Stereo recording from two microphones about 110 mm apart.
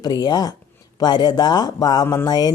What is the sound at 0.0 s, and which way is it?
Speech, 40° left (ahead or behind).